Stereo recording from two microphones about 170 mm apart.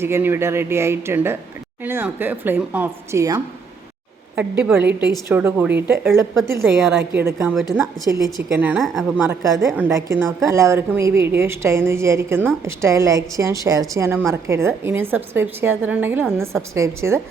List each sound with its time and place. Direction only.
0.0 s a woman's voice: 15° right (ahead or behind)
4.4 s a woman's voice: 5° right (ahead or behind)
6.7 s a woman's voice: centre (ahead or behind)
7.0 s a woman's voice: 10° right (ahead or behind)
8.6 s a woman's voice: 5° right (ahead or behind)
9.2 s a woman's voice: 20° right (ahead or behind)